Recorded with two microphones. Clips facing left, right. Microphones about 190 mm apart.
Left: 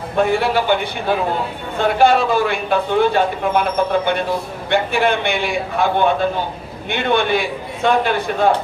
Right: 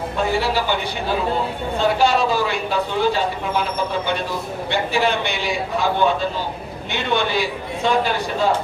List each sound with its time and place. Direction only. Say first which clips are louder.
0.2 s speech: left 5 dB; 55° left (ahead or behind)
1.8 s speech: left 4 dB; 55° left (ahead or behind)